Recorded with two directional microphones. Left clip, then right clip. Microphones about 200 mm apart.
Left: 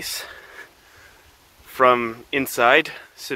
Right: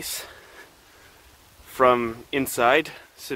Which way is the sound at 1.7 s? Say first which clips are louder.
Left 2 dB; 5° right (ahead or behind).